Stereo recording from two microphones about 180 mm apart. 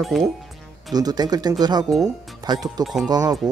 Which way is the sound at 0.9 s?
20° right (ahead or behind).